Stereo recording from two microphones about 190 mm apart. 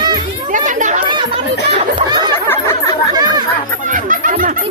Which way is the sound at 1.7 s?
25° right (ahead or behind).